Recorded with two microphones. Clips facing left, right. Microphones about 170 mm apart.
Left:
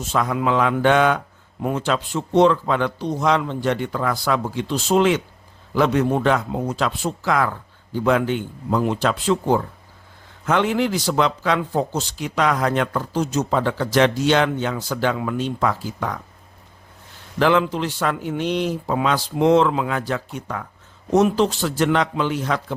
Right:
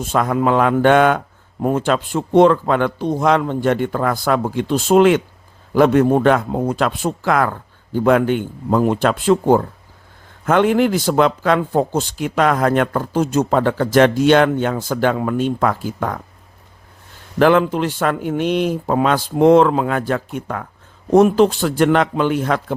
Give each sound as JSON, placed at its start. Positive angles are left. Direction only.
{"t": 0.0, "sound": "a man's voice", "side_deg": -50}
{"t": 17.4, "sound": "a man's voice", "side_deg": -50}